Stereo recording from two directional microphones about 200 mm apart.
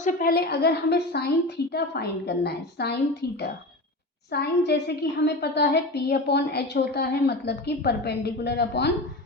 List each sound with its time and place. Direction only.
0.0 s a woman's voice: 45° left (ahead or behind)